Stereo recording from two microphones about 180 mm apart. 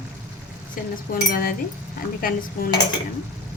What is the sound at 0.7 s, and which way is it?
Speech, 55° left (ahead or behind).